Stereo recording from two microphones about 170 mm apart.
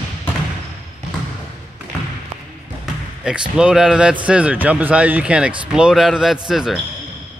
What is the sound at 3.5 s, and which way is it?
Speech, 5° right (ahead or behind).